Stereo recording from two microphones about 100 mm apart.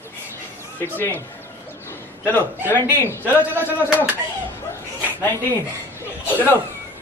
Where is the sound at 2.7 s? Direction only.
25° left (ahead or behind).